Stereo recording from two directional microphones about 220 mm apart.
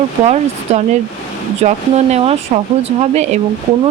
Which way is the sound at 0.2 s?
25° right (ahead or behind).